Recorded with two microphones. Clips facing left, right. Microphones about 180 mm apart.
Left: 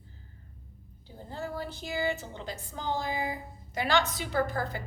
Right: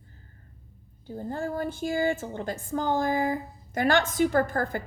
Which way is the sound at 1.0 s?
50° right (ahead or behind).